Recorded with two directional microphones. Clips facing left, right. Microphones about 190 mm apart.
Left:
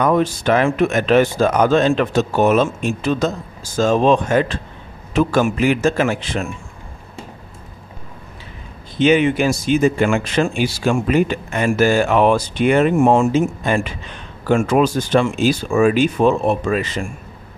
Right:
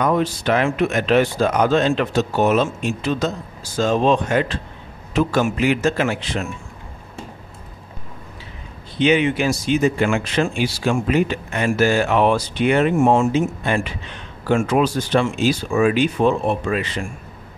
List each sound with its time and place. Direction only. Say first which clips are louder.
0.0 s speech: left 3 dB; 50° left (ahead or behind)
8.9 s speech: left 3 dB; 45° left (ahead or behind)